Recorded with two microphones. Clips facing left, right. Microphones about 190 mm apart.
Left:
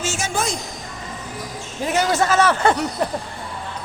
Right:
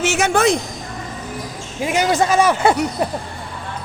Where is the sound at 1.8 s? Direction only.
15° right (ahead or behind).